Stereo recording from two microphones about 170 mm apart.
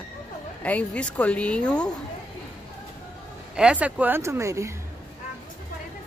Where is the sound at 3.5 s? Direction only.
5° right (ahead or behind).